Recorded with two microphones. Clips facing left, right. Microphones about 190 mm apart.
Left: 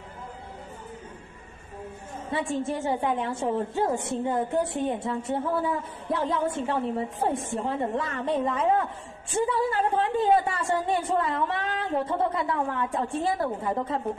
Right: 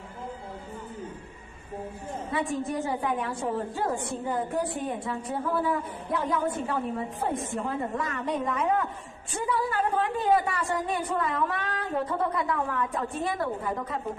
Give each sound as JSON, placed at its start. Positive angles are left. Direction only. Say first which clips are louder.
{"t": 2.3, "sound": "speech", "louder": "left 1 dB", "side_deg": 25}